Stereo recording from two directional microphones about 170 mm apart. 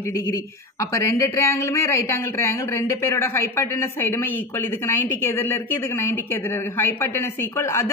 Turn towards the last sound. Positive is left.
turn(degrees=15)  # may be behind; listen again after turning